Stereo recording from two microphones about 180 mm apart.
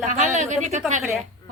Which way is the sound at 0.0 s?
45° right (ahead or behind).